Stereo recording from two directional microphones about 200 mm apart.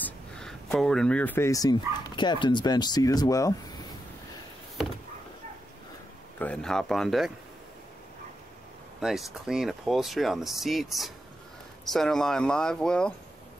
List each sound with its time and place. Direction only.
0.0 s speech: 5° left (ahead or behind)
6.4 s speech: 5° left (ahead or behind)
9.0 s speech: centre (ahead or behind)